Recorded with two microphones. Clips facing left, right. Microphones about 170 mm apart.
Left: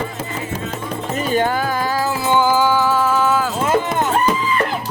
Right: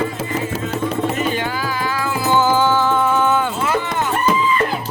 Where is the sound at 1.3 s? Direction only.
45° left (ahead or behind).